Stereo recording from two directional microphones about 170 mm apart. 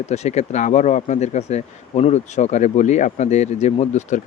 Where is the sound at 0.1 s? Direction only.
40° left (ahead or behind).